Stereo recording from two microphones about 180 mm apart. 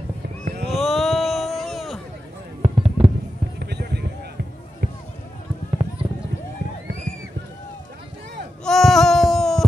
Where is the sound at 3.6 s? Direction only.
65° right (ahead or behind).